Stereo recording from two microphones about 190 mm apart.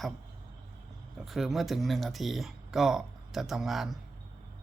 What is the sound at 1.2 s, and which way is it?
Speech, centre (ahead or behind).